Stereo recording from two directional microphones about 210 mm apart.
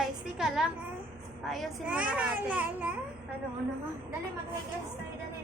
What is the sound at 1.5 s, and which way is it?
A child's voice, 5° right (ahead or behind).